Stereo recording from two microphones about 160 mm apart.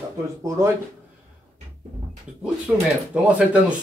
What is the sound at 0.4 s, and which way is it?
Speech, 20° right (ahead or behind).